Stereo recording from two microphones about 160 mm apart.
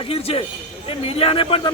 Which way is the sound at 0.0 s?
35° left (ahead or behind).